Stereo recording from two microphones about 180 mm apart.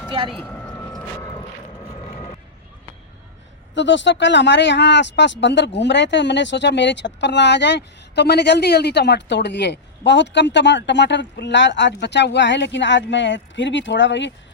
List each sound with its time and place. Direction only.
0.3 s speech: centre (ahead or behind)
3.8 s speech: 90° left